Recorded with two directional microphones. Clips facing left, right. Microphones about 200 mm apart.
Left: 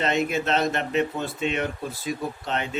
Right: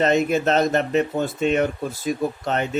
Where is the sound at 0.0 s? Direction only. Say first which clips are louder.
Right 6 dB; 40° right (ahead or behind).